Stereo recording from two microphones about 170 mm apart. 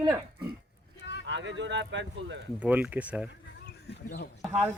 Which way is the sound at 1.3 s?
90° right.